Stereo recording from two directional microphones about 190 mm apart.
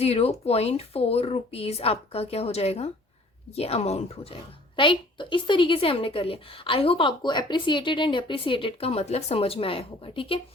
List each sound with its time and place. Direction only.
0.0 s a woman's voice: 35° left (ahead or behind)